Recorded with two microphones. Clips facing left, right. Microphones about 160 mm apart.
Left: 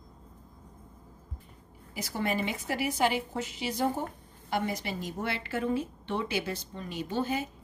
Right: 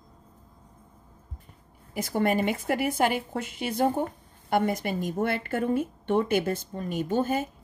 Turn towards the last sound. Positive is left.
turn(degrees=-50)  # may be behind; listen again after turning